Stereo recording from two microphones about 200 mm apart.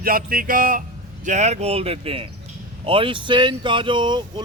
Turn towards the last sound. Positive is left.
turn(degrees=-25)  # may be behind; listen again after turning